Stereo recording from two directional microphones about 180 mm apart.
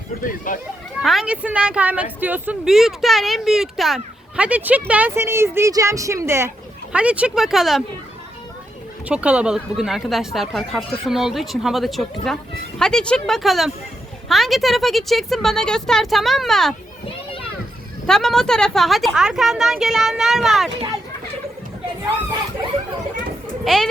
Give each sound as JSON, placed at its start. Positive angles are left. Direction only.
{"t": 0.2, "sound": "speech", "side_deg": 50}
{"t": 1.0, "sound": "speech", "side_deg": 0}
{"t": 9.0, "sound": "speech", "side_deg": -5}
{"t": 18.0, "sound": "speech", "side_deg": 0}
{"t": 23.6, "sound": "speech", "side_deg": 0}